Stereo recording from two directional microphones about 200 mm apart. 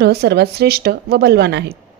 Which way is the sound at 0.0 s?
55° right (ahead or behind).